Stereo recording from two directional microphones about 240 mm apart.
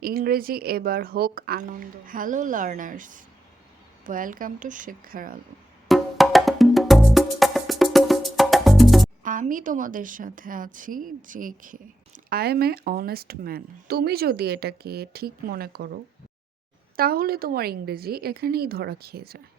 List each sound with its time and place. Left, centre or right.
0.0 s a woman's voice: right
5.9 s music: centre
9.2 s a woman's voice: right
17.0 s a woman's voice: right